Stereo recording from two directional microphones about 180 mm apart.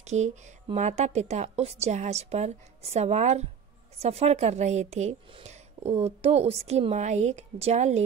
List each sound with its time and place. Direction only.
0.0 s speech: 40° right (ahead or behind)